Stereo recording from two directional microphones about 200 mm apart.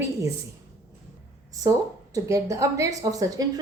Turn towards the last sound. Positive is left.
turn(degrees=-15)  # may be behind; listen again after turning